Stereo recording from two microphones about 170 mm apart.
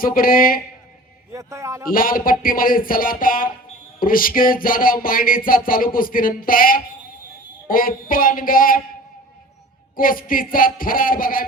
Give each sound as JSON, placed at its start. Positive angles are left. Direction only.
{"t": 0.0, "sound": "music", "side_deg": 55}
{"t": 1.3, "sound": "a man's voice", "side_deg": -20}
{"t": 1.9, "sound": "music", "side_deg": 55}
{"t": 9.9, "sound": "music", "side_deg": 55}